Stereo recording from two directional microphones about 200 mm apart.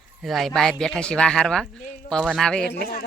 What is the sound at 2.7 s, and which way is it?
Speech, 50° left (ahead or behind).